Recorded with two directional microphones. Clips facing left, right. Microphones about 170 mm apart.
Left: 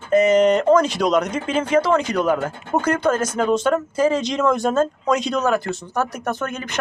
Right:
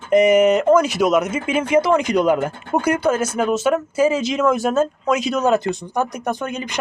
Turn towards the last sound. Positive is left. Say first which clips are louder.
# right 1 dB
turn(degrees=-15)  # may be behind; listen again after turning